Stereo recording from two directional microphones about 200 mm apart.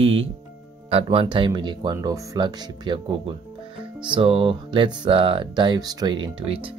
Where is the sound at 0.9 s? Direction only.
25° right (ahead or behind).